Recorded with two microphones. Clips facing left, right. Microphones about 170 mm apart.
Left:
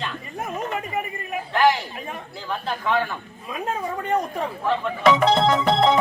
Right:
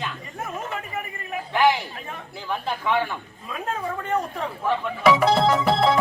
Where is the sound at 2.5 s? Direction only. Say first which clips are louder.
Even; 15° right (ahead or behind).